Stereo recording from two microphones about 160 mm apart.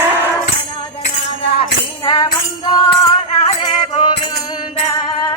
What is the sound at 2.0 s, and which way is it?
Music, 30° left (ahead or behind).